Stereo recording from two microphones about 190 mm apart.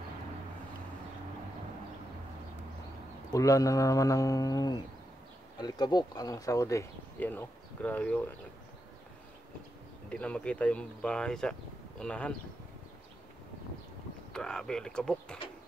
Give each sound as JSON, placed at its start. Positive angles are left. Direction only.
{"t": 3.3, "sound": "speech", "side_deg": 15}
{"t": 10.0, "sound": "speech", "side_deg": 5}
{"t": 14.3, "sound": "speech", "side_deg": 5}